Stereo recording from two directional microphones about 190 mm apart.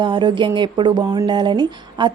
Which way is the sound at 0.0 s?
25° right (ahead or behind).